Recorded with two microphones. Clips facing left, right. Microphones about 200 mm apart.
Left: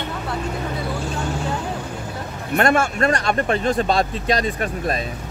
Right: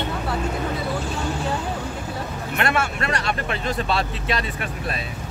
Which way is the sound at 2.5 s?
45° left (ahead or behind).